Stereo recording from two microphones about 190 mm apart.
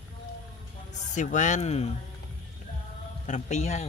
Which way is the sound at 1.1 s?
40° left (ahead or behind).